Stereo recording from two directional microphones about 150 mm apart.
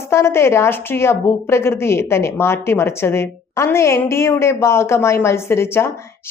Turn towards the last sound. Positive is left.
turn(degrees=15)  # may be behind; listen again after turning